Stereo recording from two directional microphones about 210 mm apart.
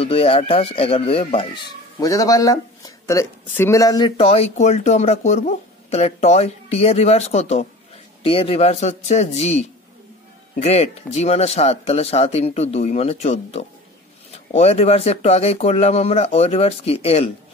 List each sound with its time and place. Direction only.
0.0 s speech: 25° left (ahead or behind)